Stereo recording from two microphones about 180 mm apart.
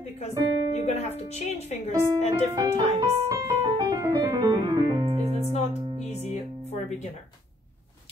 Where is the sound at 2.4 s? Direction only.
20° right (ahead or behind).